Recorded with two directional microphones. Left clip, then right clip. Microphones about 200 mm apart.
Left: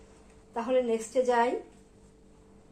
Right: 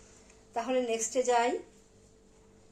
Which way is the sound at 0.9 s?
35° right (ahead or behind).